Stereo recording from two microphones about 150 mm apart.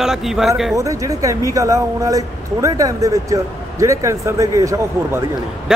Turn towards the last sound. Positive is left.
turn(degrees=-20)  # may be behind; listen again after turning